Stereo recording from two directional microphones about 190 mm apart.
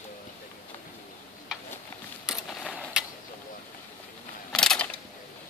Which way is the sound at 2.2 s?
Centre (ahead or behind).